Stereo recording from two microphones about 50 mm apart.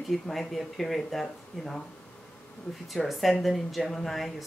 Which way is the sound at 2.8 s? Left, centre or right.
Centre.